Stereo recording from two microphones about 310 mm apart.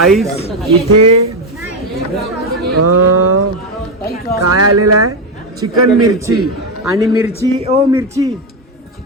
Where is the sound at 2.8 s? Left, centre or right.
Right.